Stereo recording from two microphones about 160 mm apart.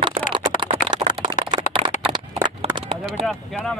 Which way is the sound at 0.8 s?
35° right (ahead or behind).